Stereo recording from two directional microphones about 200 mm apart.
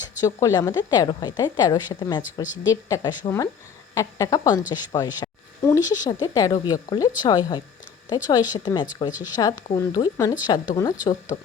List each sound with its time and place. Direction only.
0.2 s a woman's voice: 15° left (ahead or behind)
11.0 s speech: 40° left (ahead or behind)